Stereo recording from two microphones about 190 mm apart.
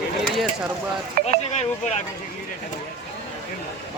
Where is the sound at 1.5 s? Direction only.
35° left (ahead or behind).